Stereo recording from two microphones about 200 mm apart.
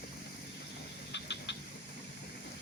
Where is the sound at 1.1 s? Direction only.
60° left (ahead or behind).